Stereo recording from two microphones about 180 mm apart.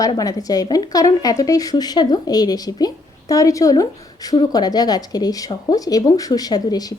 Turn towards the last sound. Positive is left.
turn(degrees=20)  # may be behind; listen again after turning